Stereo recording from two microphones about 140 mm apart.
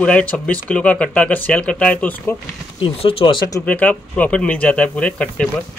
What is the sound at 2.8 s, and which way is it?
Speech, 40° left (ahead or behind).